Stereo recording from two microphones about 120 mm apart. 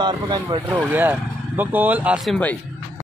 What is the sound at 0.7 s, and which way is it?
Speech, 15° right (ahead or behind).